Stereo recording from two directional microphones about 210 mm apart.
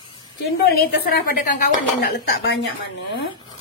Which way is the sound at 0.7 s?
45° left (ahead or behind).